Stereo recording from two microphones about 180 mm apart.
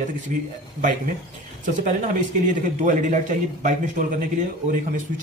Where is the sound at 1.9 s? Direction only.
45° right (ahead or behind).